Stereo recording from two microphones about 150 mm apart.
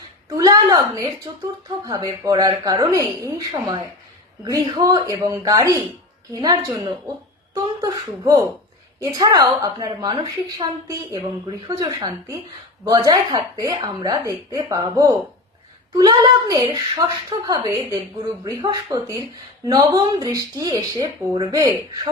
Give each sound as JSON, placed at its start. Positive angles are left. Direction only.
{"t": 0.3, "sound": "speech", "side_deg": -25}